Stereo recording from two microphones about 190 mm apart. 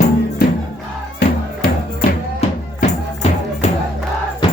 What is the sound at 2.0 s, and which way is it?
Music, 35° left (ahead or behind).